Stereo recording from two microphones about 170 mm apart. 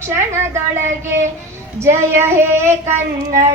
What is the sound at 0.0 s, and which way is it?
Child singing, 15° right (ahead or behind).